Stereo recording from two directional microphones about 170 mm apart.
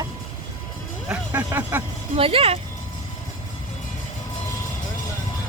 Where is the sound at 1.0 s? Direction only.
10° right (ahead or behind).